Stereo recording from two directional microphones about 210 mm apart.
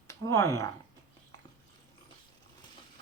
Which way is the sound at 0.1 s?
15° left (ahead or behind).